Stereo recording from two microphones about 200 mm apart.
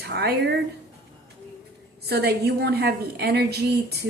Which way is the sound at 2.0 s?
55° right (ahead or behind).